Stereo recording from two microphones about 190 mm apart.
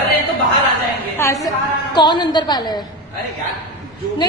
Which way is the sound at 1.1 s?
15° left (ahead or behind).